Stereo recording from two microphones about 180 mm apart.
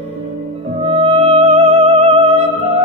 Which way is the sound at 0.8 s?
35° right (ahead or behind).